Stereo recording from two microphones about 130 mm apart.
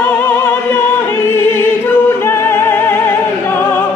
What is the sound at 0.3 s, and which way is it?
Music, 15° left (ahead or behind).